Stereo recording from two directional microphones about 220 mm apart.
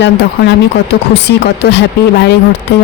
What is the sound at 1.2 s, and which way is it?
Speech, 50° left (ahead or behind).